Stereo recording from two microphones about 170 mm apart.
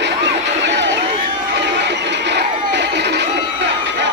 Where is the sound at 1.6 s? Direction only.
90° right.